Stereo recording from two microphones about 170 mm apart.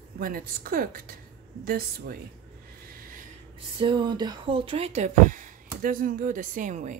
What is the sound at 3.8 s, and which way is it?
Speech, 30° right (ahead or behind).